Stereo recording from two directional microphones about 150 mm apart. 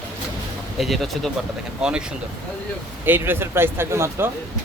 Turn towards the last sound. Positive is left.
turn(degrees=-15)  # may be behind; listen again after turning